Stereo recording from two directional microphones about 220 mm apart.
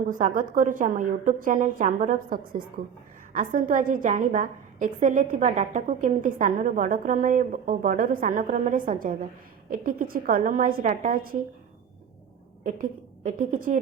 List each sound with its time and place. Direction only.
0.1 s a woman's voice: 35° right (ahead or behind)
12.6 s a woman's voice: 35° right (ahead or behind)